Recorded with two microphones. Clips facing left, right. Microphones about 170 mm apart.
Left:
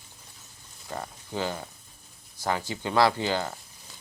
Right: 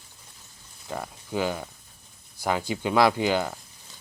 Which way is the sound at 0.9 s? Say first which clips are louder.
Right 3 dB; 10° right (ahead or behind).